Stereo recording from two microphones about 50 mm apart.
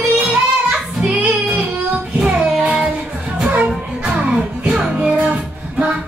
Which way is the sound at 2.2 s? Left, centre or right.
Centre.